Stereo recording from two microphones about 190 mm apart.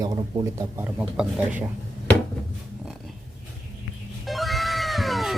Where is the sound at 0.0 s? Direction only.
15° right (ahead or behind).